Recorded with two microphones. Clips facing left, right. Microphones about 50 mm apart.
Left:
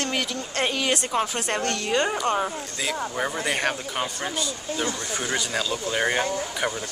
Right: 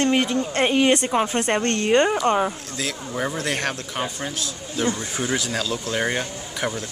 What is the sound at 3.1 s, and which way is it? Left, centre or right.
Speech, centre.